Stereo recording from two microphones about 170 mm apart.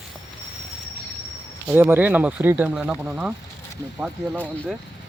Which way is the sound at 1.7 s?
10° right (ahead or behind).